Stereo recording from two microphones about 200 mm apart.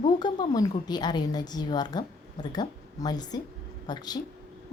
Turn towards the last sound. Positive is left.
turn(degrees=20)  # may be behind; listen again after turning